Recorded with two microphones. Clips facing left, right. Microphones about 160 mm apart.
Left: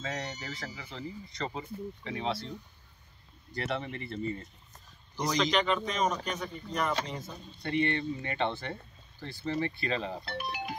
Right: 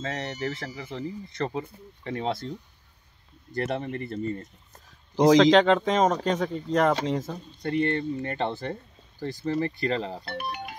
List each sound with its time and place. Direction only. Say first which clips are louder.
0.0 s speech: right 6 dB; 60° right (ahead or behind)
3.5 s speech: right 6 dB; 45° right (ahead or behind)
5.1 s speech: right 12 dB; 90° right
7.6 s speech: right 4 dB; 40° right (ahead or behind)
10.3 s speech: right 3 dB; 55° right (ahead or behind)